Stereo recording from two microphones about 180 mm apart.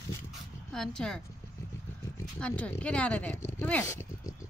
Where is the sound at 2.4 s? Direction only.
10° left (ahead or behind).